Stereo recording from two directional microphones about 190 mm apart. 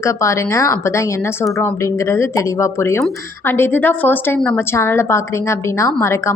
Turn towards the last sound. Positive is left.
turn(degrees=15)  # may be behind; listen again after turning